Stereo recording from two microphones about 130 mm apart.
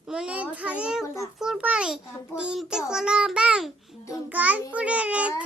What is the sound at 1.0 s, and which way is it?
Speech, 25° left (ahead or behind).